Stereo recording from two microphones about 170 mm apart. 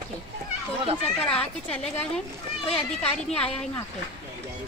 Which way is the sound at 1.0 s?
5° left (ahead or behind).